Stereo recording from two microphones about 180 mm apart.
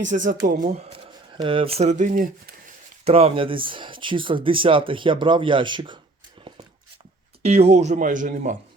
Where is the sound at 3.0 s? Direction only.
35° right (ahead or behind).